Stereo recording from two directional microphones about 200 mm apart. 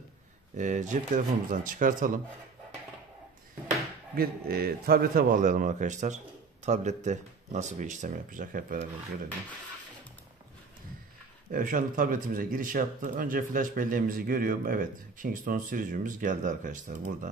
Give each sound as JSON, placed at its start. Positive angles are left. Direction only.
{"t": 0.6, "sound": "speech", "side_deg": -40}
{"t": 4.1, "sound": "speech", "side_deg": -50}
{"t": 11.5, "sound": "speech", "side_deg": -40}